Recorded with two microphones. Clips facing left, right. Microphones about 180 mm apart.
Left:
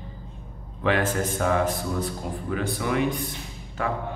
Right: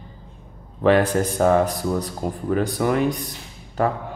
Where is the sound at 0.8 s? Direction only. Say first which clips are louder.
Right 7 dB; 35° right (ahead or behind).